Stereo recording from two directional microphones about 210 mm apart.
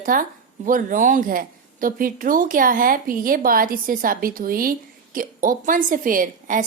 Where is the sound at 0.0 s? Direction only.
40° right (ahead or behind).